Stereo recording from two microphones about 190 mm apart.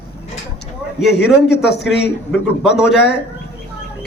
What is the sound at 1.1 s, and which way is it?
A man's voice, 65° left (ahead or behind).